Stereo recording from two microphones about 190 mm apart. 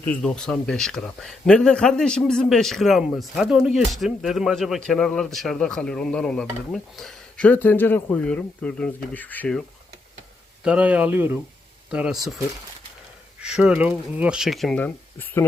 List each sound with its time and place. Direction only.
0.0 s speech: 5° left (ahead or behind)
10.6 s speech: 5° right (ahead or behind)
13.4 s speech: 5° right (ahead or behind)